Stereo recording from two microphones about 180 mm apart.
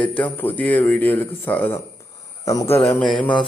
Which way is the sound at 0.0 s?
10° left (ahead or behind).